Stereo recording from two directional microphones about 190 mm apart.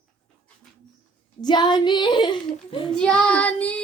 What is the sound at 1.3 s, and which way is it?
Speech, 25° left (ahead or behind).